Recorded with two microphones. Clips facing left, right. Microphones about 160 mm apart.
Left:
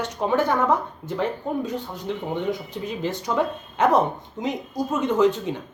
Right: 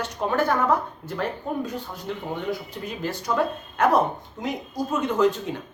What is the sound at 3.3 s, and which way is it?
Speech, 15° left (ahead or behind).